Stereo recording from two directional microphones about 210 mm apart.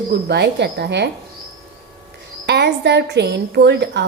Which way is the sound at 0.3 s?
50° right (ahead or behind).